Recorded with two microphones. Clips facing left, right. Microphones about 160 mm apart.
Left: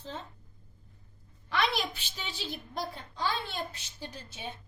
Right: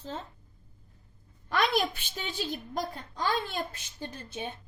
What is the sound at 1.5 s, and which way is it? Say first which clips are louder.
A woman's voice: right 3 dB; 50° right (ahead or behind).